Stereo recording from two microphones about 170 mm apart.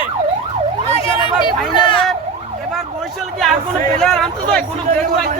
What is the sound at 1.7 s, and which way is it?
Emergency vehicle, 30° left (ahead or behind).